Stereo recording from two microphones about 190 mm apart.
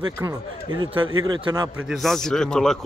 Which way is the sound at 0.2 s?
20° right (ahead or behind).